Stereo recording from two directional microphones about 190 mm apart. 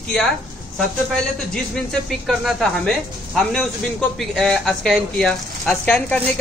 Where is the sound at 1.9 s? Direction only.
Centre (ahead or behind).